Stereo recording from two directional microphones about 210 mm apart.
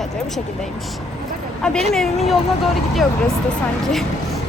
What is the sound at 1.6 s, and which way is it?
Speech, 5° left (ahead or behind).